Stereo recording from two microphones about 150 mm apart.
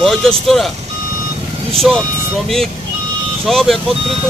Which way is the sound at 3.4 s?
Centre (ahead or behind).